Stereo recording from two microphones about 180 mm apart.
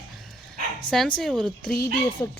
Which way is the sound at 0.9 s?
25° left (ahead or behind).